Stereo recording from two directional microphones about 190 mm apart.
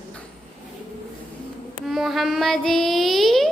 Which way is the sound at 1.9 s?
Centre (ahead or behind).